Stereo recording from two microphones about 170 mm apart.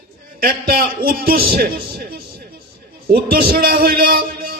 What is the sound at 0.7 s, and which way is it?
Speech, 65° right (ahead or behind).